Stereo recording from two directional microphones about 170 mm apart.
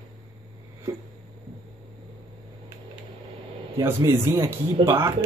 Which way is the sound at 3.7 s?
15° right (ahead or behind).